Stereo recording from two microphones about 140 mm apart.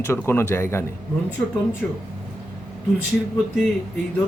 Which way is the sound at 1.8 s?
5° left (ahead or behind).